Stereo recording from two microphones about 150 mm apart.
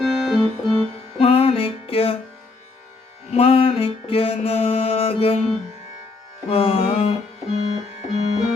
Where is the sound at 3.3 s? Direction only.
40° left (ahead or behind).